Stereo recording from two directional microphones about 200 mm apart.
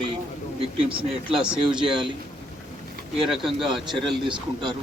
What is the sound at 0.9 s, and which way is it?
Speech, 25° right (ahead or behind).